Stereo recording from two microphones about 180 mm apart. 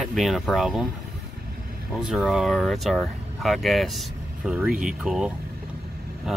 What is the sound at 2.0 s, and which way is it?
Speech, centre (ahead or behind).